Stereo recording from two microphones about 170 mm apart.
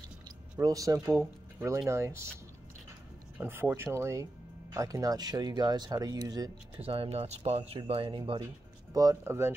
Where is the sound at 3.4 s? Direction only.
10° right (ahead or behind).